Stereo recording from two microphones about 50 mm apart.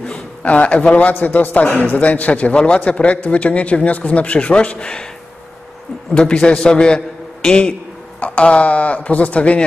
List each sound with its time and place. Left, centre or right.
0.4 s a man's voice: left
6.1 s a man's voice: centre